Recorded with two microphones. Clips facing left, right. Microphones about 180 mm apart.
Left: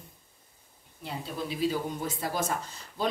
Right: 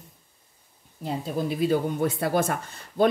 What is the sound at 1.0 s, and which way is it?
Speech, 55° right (ahead or behind).